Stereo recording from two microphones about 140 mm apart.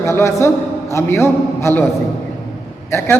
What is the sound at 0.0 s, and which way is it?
A man's voice, 20° left (ahead or behind).